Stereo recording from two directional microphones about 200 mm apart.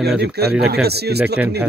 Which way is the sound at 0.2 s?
55° right (ahead or behind).